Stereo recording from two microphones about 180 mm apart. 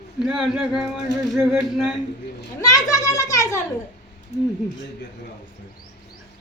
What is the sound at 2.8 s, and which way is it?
Speech, 20° left (ahead or behind).